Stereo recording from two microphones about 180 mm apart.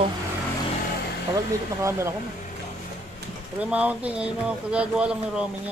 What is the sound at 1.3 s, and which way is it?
Speech, 15° right (ahead or behind).